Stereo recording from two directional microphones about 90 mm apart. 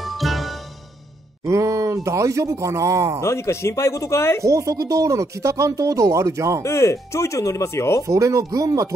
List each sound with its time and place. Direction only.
0.0 s music: centre (ahead or behind)
1.4 s speech: 35° right (ahead or behind)
3.2 s speech: 30° left (ahead or behind)
4.4 s speech: 35° right (ahead or behind)
6.6 s speech: 30° left (ahead or behind)
8.1 s speech: 35° right (ahead or behind)